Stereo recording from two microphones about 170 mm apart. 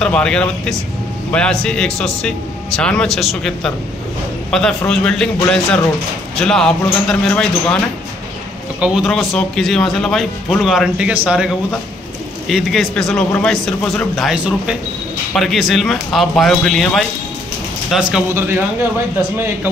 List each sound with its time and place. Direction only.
0.0 s a man's voice: 5° left (ahead or behind)
19.3 s speech: 15° right (ahead or behind)